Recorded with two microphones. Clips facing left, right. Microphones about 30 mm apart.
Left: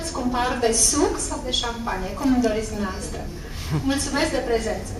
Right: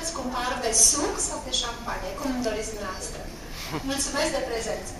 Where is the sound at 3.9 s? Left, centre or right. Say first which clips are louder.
Left 1 dB; left.